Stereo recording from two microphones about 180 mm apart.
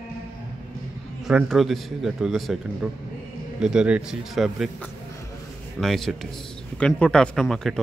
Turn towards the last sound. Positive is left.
turn(degrees=0)  # may be behind; listen again after turning